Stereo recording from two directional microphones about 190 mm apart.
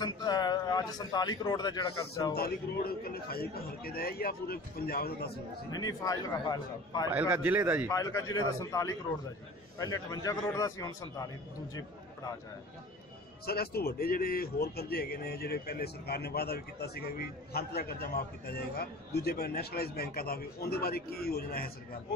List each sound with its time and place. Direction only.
0.0 s a man's voice: 20° left (ahead or behind)
2.3 s speech: 55° left (ahead or behind)
5.7 s a man's voice: 20° left (ahead or behind)
7.1 s a man's voice: 10° right (ahead or behind)
7.9 s a man's voice: 15° left (ahead or behind)
13.5 s speech: 55° left (ahead or behind)